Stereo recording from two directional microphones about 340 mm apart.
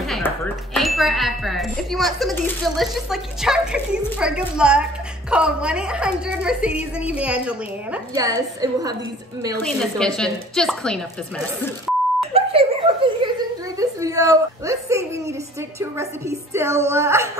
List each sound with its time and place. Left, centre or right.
0.0 s music: centre
0.7 s speech: centre
9.6 s speech: centre
12.4 s speech: centre